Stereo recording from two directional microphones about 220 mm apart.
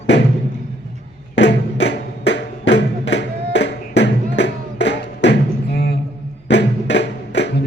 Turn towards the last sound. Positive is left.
turn(degrees=55)  # may be behind; listen again after turning